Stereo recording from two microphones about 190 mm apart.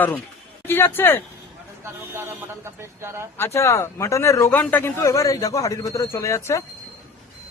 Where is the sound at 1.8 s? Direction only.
15° right (ahead or behind).